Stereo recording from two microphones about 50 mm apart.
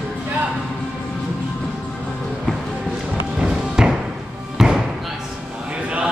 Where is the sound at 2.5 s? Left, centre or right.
Centre.